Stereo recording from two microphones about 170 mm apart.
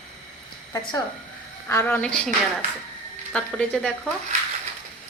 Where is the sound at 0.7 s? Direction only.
25° left (ahead or behind).